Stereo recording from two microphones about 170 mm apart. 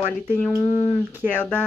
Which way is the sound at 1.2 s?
10° right (ahead or behind).